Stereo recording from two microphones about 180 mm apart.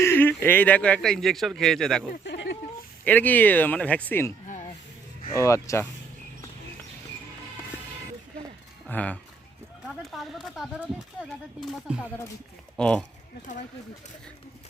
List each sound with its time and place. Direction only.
0.0 s a man's voice: 10° left (ahead or behind)
2.2 s a sound: 70° left (ahead or behind)
3.0 s speech: 10° left (ahead or behind)
8.9 s a man's voice: 10° left (ahead or behind)
11.9 s a man's voice: 5° right (ahead or behind)
12.7 s a man's voice: 5° left (ahead or behind)